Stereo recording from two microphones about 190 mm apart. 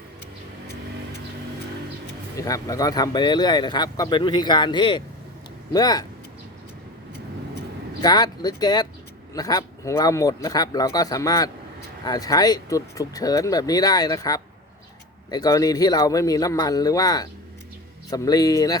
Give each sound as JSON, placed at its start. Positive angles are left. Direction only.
{"t": 2.3, "sound": "speech", "side_deg": 15}
{"t": 8.0, "sound": "speech", "side_deg": 20}